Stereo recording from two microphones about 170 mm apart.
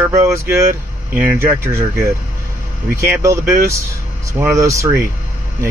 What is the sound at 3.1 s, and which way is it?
Speech, 15° right (ahead or behind).